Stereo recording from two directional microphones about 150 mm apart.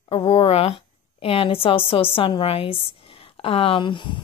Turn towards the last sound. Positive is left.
turn(degrees=35)  # may be behind; listen again after turning